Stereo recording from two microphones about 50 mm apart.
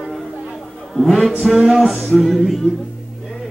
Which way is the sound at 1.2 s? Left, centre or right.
Centre.